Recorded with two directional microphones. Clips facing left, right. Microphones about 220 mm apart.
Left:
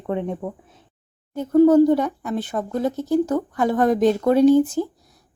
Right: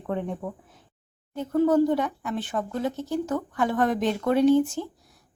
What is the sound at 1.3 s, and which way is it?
A woman's voice, 40° left (ahead or behind).